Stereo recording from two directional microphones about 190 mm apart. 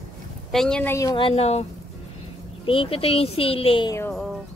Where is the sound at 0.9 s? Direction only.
20° left (ahead or behind).